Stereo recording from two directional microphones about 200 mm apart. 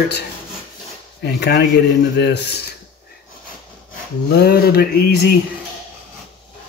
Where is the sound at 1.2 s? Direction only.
55° left (ahead or behind).